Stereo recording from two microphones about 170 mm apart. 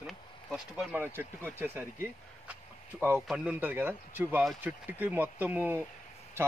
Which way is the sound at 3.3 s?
10° right (ahead or behind).